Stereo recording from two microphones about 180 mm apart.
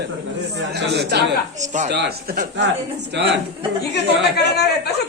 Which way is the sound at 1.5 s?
40° right (ahead or behind).